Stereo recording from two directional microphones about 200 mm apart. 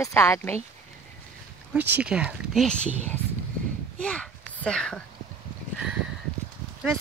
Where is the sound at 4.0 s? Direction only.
5° left (ahead or behind).